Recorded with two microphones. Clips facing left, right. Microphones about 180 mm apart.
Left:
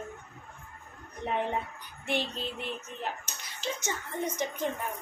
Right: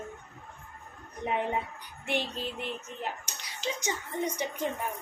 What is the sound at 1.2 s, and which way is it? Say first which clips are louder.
A woman's voice: right 1 dB; 10° right (ahead or behind).